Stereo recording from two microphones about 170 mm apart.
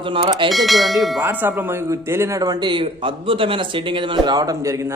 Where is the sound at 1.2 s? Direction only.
10° right (ahead or behind).